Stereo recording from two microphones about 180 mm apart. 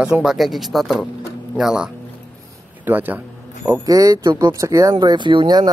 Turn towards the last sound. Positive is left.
turn(degrees=-25)  # may be behind; listen again after turning